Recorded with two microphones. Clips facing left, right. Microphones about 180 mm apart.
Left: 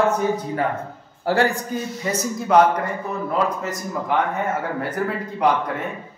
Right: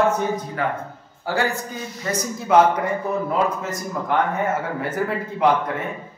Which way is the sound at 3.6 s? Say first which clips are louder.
Even; centre (ahead or behind).